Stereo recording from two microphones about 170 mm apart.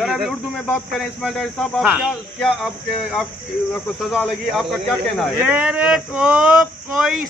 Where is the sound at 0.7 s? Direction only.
Centre (ahead or behind).